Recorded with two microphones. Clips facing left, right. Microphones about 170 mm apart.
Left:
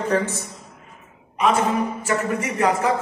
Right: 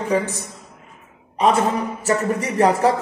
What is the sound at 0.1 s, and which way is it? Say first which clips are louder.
Speech: right 2 dB; 15° right (ahead or behind).